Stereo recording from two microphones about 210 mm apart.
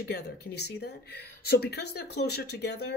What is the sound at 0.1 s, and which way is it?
Speech, 50° left (ahead or behind).